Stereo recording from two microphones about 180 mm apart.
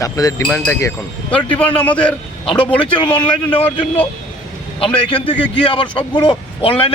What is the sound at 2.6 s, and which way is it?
Speech, 30° left (ahead or behind).